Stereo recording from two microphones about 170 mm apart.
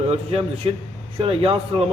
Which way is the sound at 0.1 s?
35° right (ahead or behind).